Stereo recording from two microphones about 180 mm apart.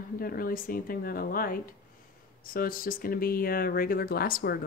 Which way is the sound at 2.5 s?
55° left (ahead or behind).